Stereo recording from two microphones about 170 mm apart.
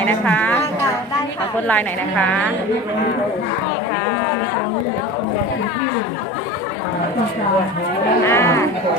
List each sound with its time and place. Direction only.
0.0 s a sound: 10° left (ahead or behind)
1.6 s a woman's voice: 10° left (ahead or behind)
8.3 s a woman's voice: 15° left (ahead or behind)